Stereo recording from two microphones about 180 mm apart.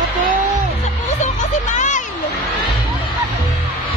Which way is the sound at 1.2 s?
45° left (ahead or behind).